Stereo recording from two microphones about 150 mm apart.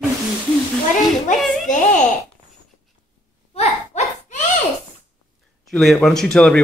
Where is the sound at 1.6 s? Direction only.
55° left (ahead or behind).